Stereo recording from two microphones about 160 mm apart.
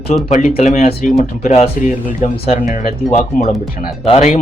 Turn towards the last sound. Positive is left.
turn(degrees=40)  # may be behind; listen again after turning